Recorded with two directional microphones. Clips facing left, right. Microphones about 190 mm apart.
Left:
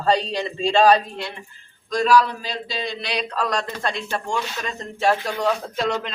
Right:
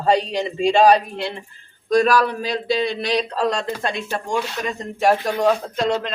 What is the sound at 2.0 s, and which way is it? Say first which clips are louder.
Speech: left 2 dB; 55° right (ahead or behind).